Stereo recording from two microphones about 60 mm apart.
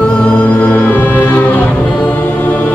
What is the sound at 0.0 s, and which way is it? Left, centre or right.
Music, left.